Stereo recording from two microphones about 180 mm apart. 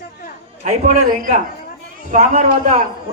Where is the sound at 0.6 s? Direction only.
45° right (ahead or behind).